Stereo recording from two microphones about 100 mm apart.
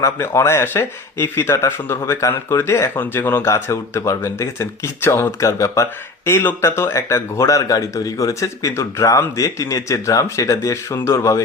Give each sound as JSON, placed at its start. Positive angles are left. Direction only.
{"t": 0.0, "sound": "speech", "side_deg": 25}